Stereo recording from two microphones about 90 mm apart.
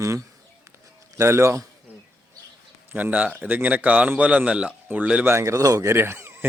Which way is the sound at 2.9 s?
15° right (ahead or behind).